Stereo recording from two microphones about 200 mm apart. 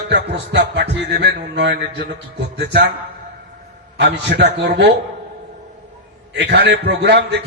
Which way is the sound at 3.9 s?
60° right (ahead or behind).